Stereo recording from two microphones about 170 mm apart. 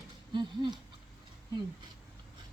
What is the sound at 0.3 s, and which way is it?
Speech, 25° right (ahead or behind).